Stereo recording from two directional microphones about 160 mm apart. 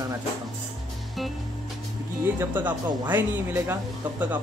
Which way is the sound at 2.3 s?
10° right (ahead or behind).